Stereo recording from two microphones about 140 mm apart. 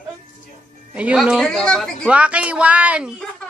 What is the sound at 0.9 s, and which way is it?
Speech, 10° right (ahead or behind).